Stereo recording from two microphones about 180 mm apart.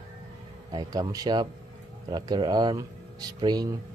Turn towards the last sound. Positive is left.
turn(degrees=-20)  # may be behind; listen again after turning